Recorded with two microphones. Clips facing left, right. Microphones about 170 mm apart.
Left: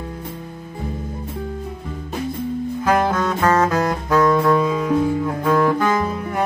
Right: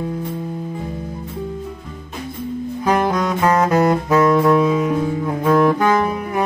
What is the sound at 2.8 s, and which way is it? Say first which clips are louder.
Saxophone: right 1 dB; 15° right (ahead or behind).